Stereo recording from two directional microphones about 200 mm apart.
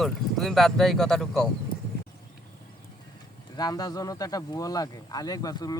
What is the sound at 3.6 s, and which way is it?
Speech, 20° left (ahead or behind).